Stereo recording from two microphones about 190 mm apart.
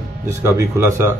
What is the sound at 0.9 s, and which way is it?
Speech, 15° right (ahead or behind).